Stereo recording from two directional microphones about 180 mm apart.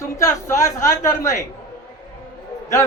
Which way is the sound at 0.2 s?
15° left (ahead or behind).